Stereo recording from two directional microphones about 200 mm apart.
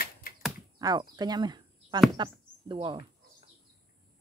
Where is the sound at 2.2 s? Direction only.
25° right (ahead or behind).